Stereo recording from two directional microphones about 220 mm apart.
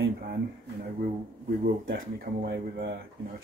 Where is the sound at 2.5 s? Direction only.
50° right (ahead or behind).